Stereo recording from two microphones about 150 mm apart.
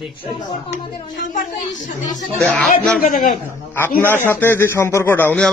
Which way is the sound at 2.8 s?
5° left (ahead or behind).